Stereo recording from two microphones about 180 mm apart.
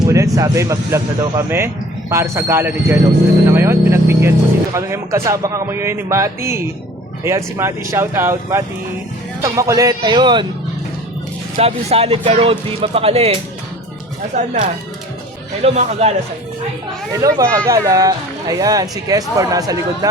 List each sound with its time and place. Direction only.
0.0 s speech: 15° right (ahead or behind)
11.5 s speech: 35° right (ahead or behind)
15.6 s speech: 35° right (ahead or behind)
17.1 s speech: 20° right (ahead or behind)